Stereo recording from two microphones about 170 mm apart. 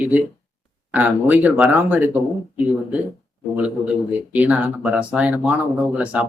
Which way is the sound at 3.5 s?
5° right (ahead or behind).